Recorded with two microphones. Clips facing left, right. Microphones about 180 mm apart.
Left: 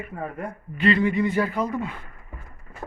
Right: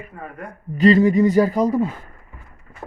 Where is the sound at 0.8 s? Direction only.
40° right (ahead or behind).